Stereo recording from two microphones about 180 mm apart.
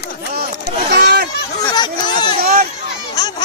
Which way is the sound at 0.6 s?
65° right (ahead or behind).